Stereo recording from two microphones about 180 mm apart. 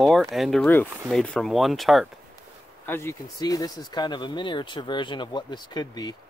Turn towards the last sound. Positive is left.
turn(degrees=25)  # may be behind; listen again after turning